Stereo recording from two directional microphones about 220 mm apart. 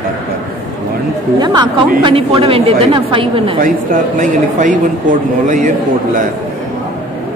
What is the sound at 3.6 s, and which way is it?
Speech, 35° right (ahead or behind).